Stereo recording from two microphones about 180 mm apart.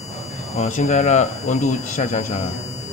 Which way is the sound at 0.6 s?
40° left (ahead or behind).